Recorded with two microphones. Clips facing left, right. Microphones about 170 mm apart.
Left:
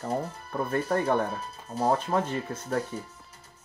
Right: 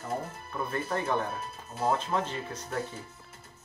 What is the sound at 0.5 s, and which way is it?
Speech, 50° left (ahead or behind).